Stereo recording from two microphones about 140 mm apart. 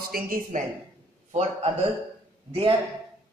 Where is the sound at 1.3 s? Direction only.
50° right (ahead or behind).